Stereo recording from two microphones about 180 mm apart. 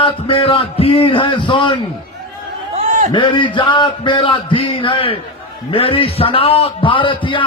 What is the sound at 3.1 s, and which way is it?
A man's voice, 25° left (ahead or behind).